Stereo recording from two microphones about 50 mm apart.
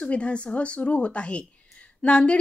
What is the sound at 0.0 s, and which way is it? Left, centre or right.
A woman's voice, left.